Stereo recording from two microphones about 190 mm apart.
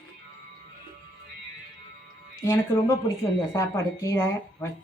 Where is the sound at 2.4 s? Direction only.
15° left (ahead or behind).